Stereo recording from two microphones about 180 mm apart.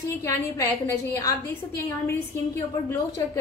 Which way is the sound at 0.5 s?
15° left (ahead or behind).